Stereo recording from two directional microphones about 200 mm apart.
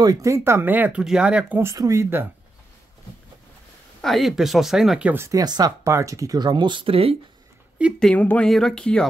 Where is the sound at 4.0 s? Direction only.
Centre (ahead or behind); by 7.1 s 30° right (ahead or behind).